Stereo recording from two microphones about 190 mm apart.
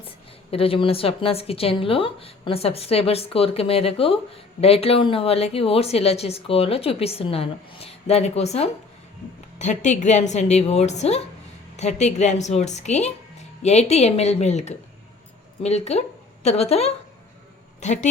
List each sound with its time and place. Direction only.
0.5 s a woman's voice: 30° left (ahead or behind)